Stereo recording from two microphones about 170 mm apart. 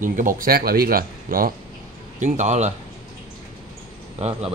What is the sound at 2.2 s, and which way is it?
Speech, 45° right (ahead or behind).